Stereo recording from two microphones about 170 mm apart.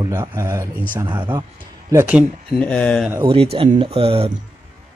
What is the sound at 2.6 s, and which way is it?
Speech, 5° left (ahead or behind).